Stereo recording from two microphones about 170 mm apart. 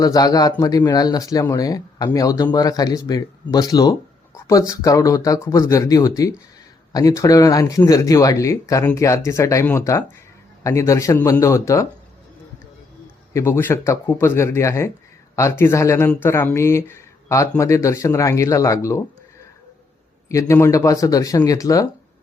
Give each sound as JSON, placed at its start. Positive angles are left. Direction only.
{"t": 0.0, "sound": "speech", "side_deg": 20}
{"t": 13.3, "sound": "speech", "side_deg": 15}
{"t": 20.2, "sound": "speech", "side_deg": 15}